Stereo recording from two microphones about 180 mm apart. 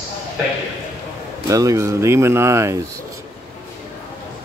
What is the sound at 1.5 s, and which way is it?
Speech, 20° right (ahead or behind).